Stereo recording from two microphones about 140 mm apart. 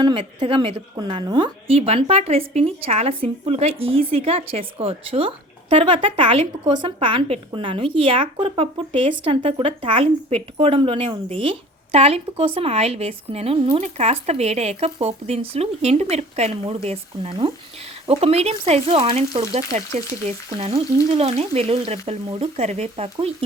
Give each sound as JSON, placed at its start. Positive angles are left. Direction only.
{"t": 0.0, "sound": "speech", "side_deg": -40}
{"t": 0.9, "sound": "a woman's voice", "side_deg": -30}